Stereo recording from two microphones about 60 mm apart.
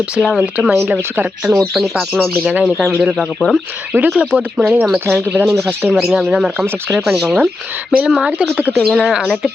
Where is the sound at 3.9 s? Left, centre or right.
Right.